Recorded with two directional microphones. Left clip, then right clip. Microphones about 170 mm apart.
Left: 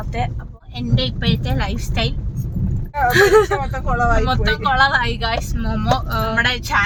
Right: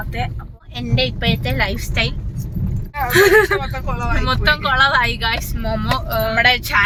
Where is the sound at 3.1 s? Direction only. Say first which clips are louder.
Right 1 dB; 20° right (ahead or behind).